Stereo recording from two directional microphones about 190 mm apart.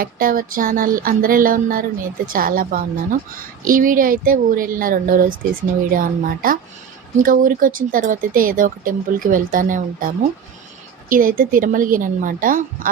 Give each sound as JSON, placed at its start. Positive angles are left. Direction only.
{"t": 0.0, "sound": "speech", "side_deg": -50}
{"t": 11.1, "sound": "speech", "side_deg": -45}